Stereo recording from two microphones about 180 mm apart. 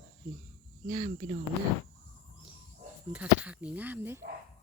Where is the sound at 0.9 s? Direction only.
35° right (ahead or behind).